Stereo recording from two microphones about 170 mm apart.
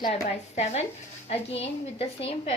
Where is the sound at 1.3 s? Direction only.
35° left (ahead or behind).